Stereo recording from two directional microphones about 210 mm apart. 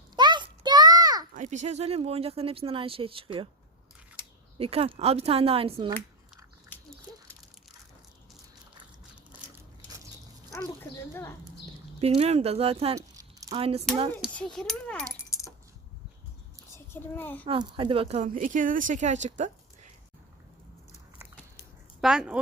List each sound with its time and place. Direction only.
0.2 s a sound: 20° right (ahead or behind)
1.3 s speech: 35° right (ahead or behind)
4.5 s speech: 25° right (ahead or behind)
11.1 s speech: 15° left (ahead or behind)
11.9 s speech: 30° right (ahead or behind)
13.1 s a sound: 15° right (ahead or behind)
13.6 s speech: 30° right (ahead or behind)
14.2 s a sound: centre (ahead or behind)
15.2 s keys jangling: 15° left (ahead or behind)
16.7 s a child's voice: 10° left (ahead or behind)
17.4 s speech: 25° right (ahead or behind)
22.0 s a sound: 5° right (ahead or behind)